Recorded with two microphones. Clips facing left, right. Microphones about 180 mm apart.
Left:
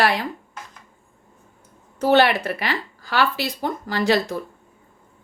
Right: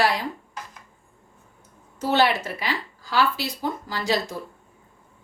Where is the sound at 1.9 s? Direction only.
60° left (ahead or behind).